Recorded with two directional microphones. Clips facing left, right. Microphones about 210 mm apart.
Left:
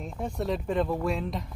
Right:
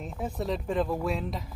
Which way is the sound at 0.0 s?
Centre (ahead or behind).